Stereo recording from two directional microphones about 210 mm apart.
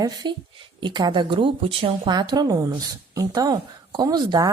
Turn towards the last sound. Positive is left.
turn(degrees=-20)  # may be behind; listen again after turning